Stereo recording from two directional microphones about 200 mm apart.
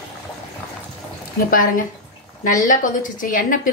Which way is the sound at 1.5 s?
45° left (ahead or behind).